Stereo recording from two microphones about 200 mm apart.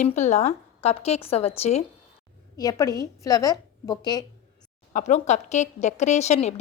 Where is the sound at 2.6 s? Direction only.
15° left (ahead or behind).